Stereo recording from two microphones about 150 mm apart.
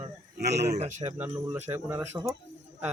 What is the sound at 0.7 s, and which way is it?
Speech, 50° right (ahead or behind).